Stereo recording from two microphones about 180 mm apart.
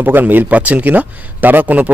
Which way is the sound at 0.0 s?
10° right (ahead or behind).